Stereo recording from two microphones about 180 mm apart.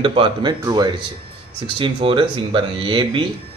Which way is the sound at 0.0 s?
30° right (ahead or behind).